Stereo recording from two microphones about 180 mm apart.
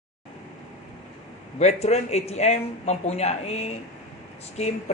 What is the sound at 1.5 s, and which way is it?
Speech, 40° left (ahead or behind).